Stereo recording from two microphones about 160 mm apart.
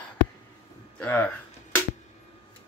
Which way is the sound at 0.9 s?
10° left (ahead or behind).